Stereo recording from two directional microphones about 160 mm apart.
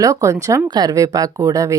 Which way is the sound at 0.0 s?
20° right (ahead or behind).